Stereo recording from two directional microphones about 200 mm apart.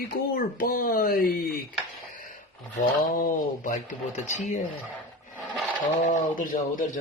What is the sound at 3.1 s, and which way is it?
Speech, 45° left (ahead or behind).